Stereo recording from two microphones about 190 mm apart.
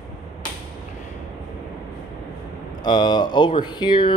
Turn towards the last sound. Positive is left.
turn(degrees=25)  # may be behind; listen again after turning